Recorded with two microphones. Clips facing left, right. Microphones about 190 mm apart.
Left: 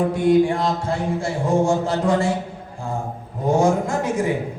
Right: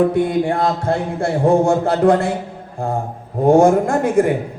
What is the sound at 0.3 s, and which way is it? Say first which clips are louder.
A man's voice: left 1 dB; 60° right (ahead or behind).